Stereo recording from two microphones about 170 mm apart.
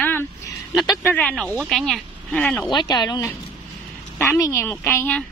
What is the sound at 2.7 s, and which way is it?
A woman's voice, 25° left (ahead or behind).